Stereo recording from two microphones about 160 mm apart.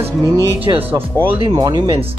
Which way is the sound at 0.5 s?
35° right (ahead or behind).